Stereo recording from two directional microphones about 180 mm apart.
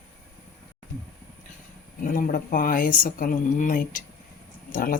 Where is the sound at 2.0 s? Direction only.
50° left (ahead or behind).